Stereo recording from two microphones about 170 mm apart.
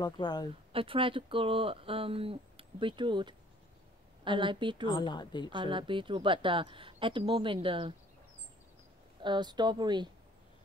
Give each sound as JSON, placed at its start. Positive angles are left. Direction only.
{"t": 0.0, "sound": "speech", "side_deg": 25}
{"t": 0.7, "sound": "a woman's voice", "side_deg": -30}
{"t": 4.8, "sound": "speech", "side_deg": 25}
{"t": 5.5, "sound": "a woman's voice", "side_deg": -30}
{"t": 9.2, "sound": "a woman's voice", "side_deg": -25}